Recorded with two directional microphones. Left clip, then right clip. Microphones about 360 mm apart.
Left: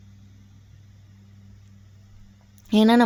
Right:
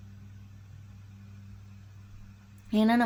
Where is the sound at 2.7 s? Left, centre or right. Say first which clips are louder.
Left 8 dB; left.